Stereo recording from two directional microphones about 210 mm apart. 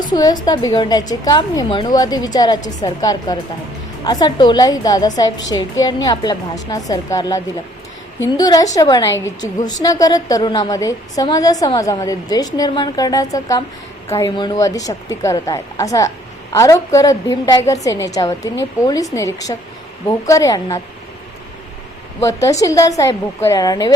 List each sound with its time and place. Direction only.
0.1 s a woman's voice: 20° left (ahead or behind)
22.2 s a woman's voice: 15° left (ahead or behind)